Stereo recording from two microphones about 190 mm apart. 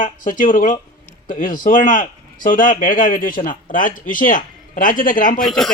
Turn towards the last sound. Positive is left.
turn(degrees=0)  # may be behind; listen again after turning